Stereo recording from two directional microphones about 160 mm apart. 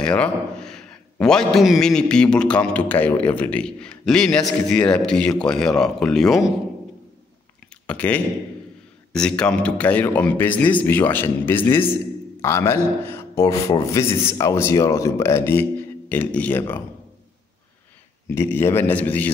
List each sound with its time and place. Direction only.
0.0 s a man's voice: 5° left (ahead or behind)
7.8 s a man's voice: 10° left (ahead or behind)
18.3 s a man's voice: 15° left (ahead or behind)